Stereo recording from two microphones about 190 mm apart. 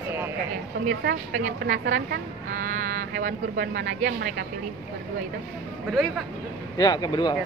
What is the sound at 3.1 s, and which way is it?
Speech, 50° right (ahead or behind).